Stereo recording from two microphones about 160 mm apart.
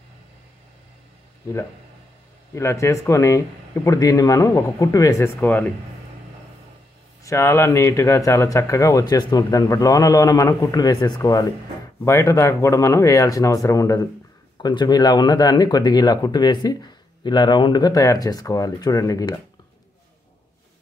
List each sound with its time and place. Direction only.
2.5 s speech: 15° left (ahead or behind)
7.2 s speech: 15° left (ahead or behind)